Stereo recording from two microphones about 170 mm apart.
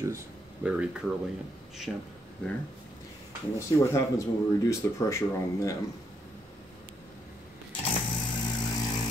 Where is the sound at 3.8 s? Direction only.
15° left (ahead or behind).